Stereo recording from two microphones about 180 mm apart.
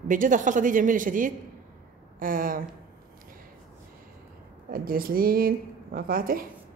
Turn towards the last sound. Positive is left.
turn(degrees=-55)  # may be behind; listen again after turning